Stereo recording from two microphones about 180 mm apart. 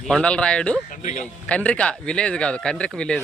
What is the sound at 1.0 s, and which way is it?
Speech, 45° left (ahead or behind).